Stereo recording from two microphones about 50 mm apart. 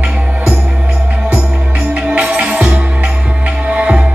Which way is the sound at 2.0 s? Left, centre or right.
Centre.